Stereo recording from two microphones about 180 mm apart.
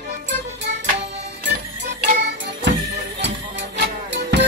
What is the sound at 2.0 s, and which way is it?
Music, 70° right (ahead or behind).